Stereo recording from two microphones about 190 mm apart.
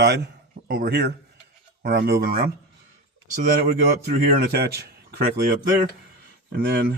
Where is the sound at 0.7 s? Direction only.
55° right (ahead or behind).